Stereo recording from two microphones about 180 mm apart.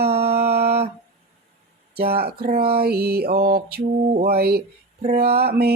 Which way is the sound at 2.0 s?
60° right (ahead or behind).